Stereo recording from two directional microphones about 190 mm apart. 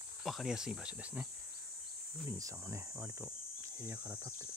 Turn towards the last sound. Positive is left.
turn(degrees=-20)  # may be behind; listen again after turning